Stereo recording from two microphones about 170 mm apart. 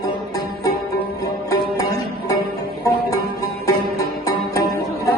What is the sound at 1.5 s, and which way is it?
Music, 20° left (ahead or behind).